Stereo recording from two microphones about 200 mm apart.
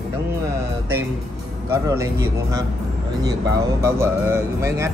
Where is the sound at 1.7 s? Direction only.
15° right (ahead or behind).